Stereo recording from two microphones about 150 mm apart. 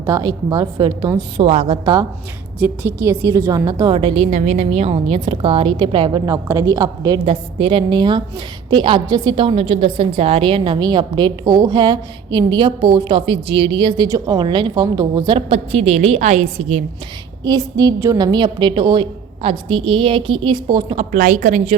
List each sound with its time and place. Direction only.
0.0 s a woman's voice: 25° right (ahead or behind)
1.5 s a woman's voice: 40° right (ahead or behind)
2.6 s a woman's voice: 10° right (ahead or behind)
7.3 s a woman's voice: 35° right (ahead or behind)
15.4 s a woman's voice: 40° right (ahead or behind)
17.4 s a woman's voice: 25° right (ahead or behind)
20.9 s a woman's voice: 50° right (ahead or behind)